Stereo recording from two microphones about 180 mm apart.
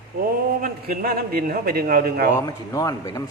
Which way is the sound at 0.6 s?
55° right (ahead or behind).